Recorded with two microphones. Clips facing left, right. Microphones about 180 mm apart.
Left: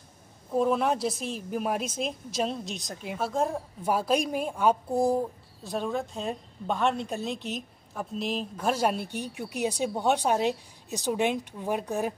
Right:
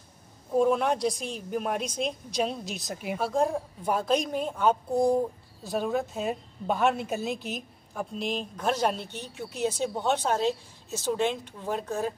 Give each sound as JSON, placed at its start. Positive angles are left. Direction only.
{"t": 0.5, "sound": "a woman's voice", "side_deg": 0}